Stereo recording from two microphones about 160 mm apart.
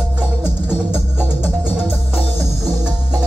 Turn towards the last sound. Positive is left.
turn(degrees=-5)  # may be behind; listen again after turning